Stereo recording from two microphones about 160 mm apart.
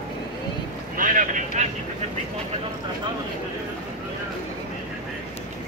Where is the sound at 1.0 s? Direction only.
55° right (ahead or behind).